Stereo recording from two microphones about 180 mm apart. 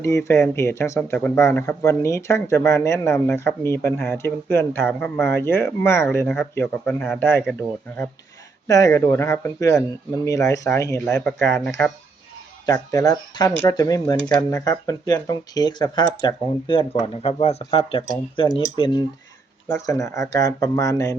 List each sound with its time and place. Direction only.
0.0 s speech: 15° left (ahead or behind)
8.6 s speech: 20° left (ahead or behind)
11.1 s speech: 5° left (ahead or behind)
12.6 s speech: 20° left (ahead or behind)